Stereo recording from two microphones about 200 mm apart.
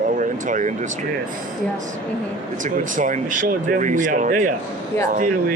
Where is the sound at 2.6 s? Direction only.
40° right (ahead or behind).